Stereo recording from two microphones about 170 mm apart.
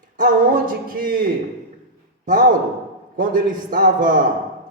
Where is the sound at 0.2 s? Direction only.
55° right (ahead or behind).